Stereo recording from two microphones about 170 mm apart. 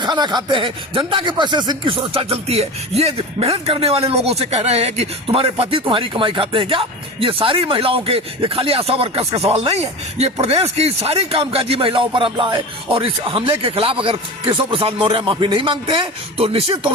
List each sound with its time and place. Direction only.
0.0 s speech: 25° right (ahead or behind)